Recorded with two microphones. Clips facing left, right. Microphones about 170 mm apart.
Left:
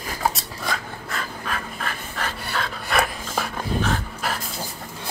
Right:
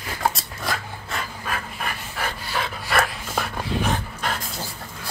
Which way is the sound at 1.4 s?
10° right (ahead or behind).